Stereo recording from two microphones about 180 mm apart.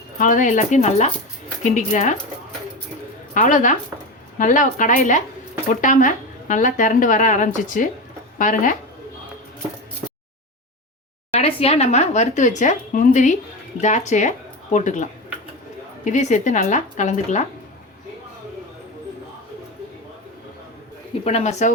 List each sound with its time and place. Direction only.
0.2 s a woman's voice: 45° left (ahead or behind)
3.3 s a woman's voice: 45° left (ahead or behind)
11.3 s a woman's voice: 35° left (ahead or behind)
21.2 s speech: 40° left (ahead or behind)